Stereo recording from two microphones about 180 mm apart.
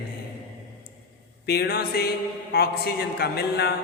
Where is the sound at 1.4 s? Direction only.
60° left (ahead or behind).